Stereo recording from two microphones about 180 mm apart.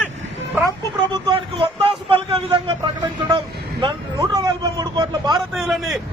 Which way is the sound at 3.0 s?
30° right (ahead or behind).